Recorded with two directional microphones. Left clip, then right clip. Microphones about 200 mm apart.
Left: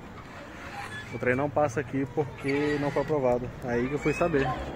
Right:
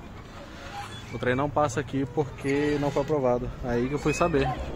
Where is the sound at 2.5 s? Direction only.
15° right (ahead or behind).